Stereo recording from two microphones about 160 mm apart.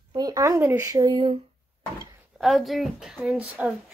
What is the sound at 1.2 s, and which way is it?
Speech, 35° right (ahead or behind).